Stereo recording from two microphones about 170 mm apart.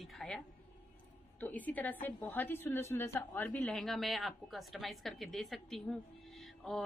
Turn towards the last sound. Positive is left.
turn(degrees=0)  # may be behind; listen again after turning